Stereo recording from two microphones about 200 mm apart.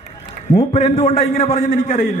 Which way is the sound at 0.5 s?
35° left (ahead or behind).